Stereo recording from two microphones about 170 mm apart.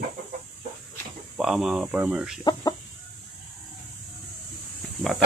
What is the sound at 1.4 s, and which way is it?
Speech, 5° right (ahead or behind).